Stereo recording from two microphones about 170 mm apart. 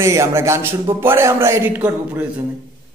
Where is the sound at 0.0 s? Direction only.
15° right (ahead or behind).